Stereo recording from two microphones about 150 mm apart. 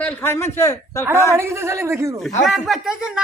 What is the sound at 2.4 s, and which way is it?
Speech, centre (ahead or behind).